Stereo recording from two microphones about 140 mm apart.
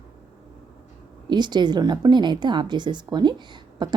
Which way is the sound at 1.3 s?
30° right (ahead or behind).